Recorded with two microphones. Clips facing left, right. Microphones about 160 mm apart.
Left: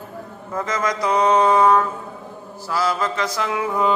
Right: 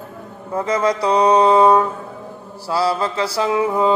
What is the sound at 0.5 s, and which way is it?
Mantra, 30° right (ahead or behind).